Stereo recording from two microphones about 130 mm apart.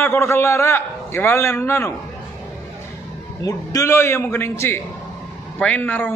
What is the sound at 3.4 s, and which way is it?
A man's voice, 25° left (ahead or behind).